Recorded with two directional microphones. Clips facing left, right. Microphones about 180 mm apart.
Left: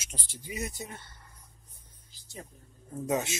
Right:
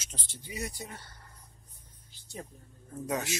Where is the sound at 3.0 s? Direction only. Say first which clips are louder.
Left 3 dB; 25° left (ahead or behind).